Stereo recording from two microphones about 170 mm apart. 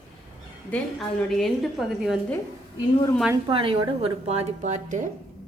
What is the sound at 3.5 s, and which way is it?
A woman's voice, 30° right (ahead or behind).